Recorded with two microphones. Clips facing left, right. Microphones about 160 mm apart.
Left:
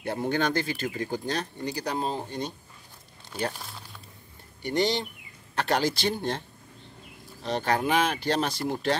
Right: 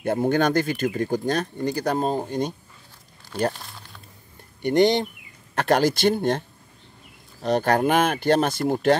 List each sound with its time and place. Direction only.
0.0 s speech: 50° right (ahead or behind)
4.6 s speech: 55° right (ahead or behind)
7.4 s speech: 50° right (ahead or behind)